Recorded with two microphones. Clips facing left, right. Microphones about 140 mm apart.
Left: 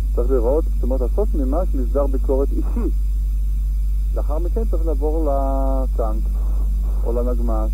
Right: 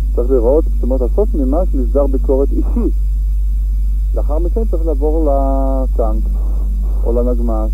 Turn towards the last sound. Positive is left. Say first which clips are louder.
# right 6 dB
turn(degrees=-25)  # may be behind; listen again after turning